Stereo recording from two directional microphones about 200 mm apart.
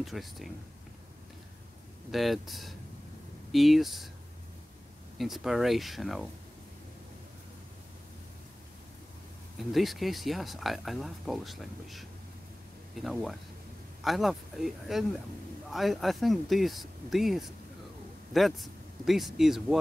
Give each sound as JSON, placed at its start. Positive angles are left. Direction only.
{"t": 0.0, "sound": "speech", "side_deg": 0}
{"t": 2.0, "sound": "speech", "side_deg": 0}
{"t": 5.1, "sound": "speech", "side_deg": 0}
{"t": 9.6, "sound": "speech", "side_deg": 0}